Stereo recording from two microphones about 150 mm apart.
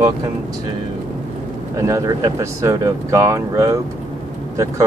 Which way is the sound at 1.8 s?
20° right (ahead or behind).